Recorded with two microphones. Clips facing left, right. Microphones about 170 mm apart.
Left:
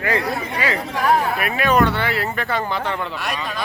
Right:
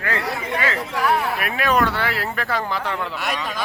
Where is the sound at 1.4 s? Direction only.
Centre (ahead or behind).